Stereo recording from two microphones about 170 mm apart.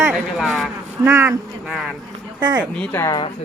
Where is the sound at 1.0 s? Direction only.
15° right (ahead or behind).